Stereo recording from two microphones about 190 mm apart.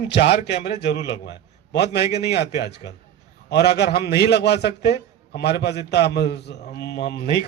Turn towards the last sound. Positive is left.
turn(degrees=60)  # may be behind; listen again after turning